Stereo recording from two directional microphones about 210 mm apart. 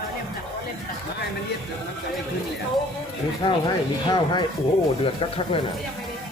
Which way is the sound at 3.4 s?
20° left (ahead or behind).